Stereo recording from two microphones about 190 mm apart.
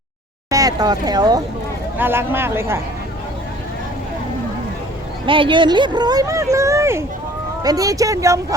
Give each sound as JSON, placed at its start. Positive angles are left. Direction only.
{"t": 0.5, "sound": "speech", "side_deg": -20}
{"t": 5.2, "sound": "speech", "side_deg": -25}